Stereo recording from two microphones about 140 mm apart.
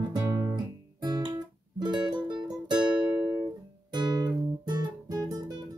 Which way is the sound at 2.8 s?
5° right (ahead or behind).